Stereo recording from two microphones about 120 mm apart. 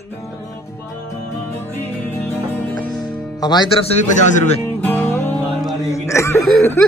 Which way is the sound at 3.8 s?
70° left (ahead or behind).